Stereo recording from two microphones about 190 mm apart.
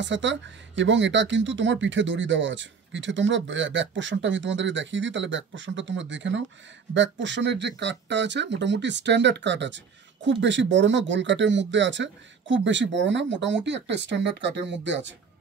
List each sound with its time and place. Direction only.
0.0 s speech: 70° right (ahead or behind)